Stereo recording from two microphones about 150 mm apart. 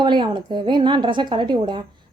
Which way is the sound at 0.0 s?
30° right (ahead or behind).